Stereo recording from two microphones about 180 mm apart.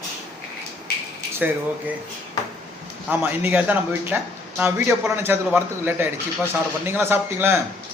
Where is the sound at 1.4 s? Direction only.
10° right (ahead or behind).